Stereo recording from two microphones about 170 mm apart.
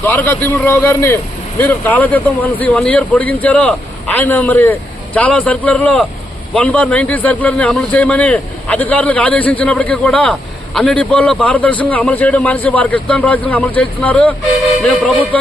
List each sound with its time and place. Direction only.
0.0 s speech: 10° left (ahead or behind)